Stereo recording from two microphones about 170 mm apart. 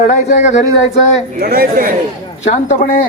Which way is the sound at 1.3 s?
55° right (ahead or behind).